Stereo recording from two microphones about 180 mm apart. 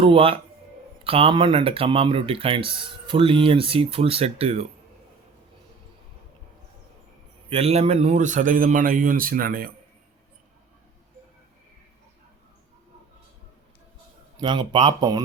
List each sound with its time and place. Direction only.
0.0 s speech: 30° right (ahead or behind)
7.5 s a man's voice: 35° right (ahead or behind); by 9.6 s 55° right (ahead or behind)
14.3 s speech: 25° right (ahead or behind)